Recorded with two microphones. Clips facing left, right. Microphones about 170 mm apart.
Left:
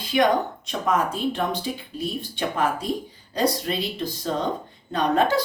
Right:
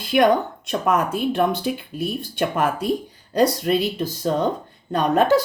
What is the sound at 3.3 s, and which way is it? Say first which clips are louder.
Speech: right 5 dB; 50° right (ahead or behind).